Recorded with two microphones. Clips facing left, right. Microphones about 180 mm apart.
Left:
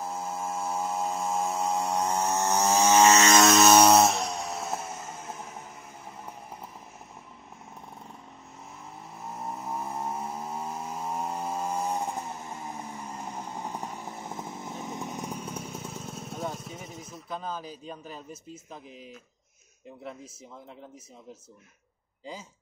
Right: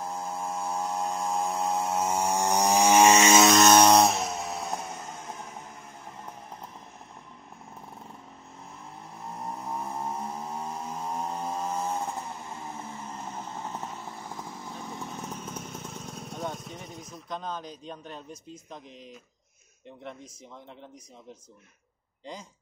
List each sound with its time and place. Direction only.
0.0 s chainsaw: 5° left (ahead or behind)
3.4 s vehicle: 5° left (ahead or behind)
9.2 s vehicle: centre (ahead or behind)
22.2 s speech: 5° left (ahead or behind)